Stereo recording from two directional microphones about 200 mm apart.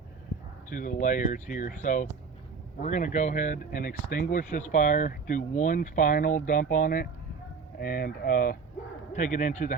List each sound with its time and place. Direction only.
0.7 s speech: 40° left (ahead or behind)